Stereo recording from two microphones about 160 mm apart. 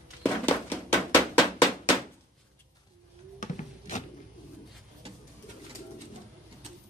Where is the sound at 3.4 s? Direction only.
50° left (ahead or behind).